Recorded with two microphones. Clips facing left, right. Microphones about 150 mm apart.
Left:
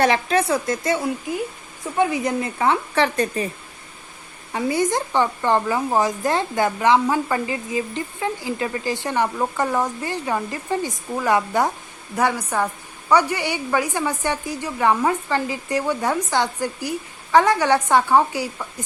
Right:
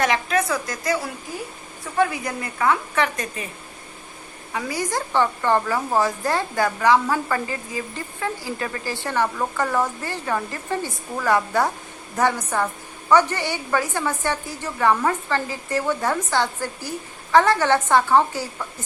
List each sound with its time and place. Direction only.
0.0 s a woman's voice: 30° left (ahead or behind)
4.5 s speech: 25° left (ahead or behind)